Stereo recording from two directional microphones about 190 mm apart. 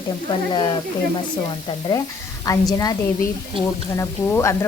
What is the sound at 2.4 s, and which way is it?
Speech, 20° left (ahead or behind).